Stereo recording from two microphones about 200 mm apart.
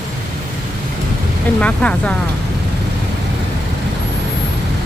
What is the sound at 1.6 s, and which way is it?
Speech, 5° left (ahead or behind).